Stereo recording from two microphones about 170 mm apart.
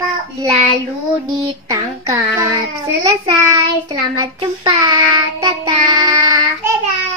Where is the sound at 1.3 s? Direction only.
20° right (ahead or behind).